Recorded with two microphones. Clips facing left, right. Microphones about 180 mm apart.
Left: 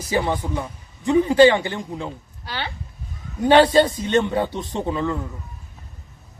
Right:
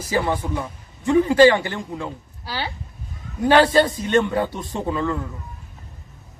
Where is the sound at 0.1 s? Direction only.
15° left (ahead or behind).